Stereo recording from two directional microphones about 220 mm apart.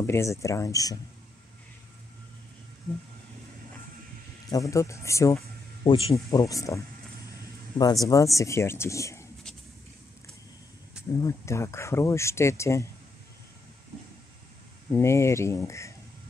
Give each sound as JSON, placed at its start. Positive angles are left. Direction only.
{"t": 0.0, "sound": "speech", "side_deg": 10}
{"t": 4.5, "sound": "speech", "side_deg": 15}
{"t": 5.9, "sound": "speech", "side_deg": 25}
{"t": 6.1, "sound": "speech", "side_deg": 15}
{"t": 11.1, "sound": "speech", "side_deg": 15}
{"t": 14.9, "sound": "speech", "side_deg": 10}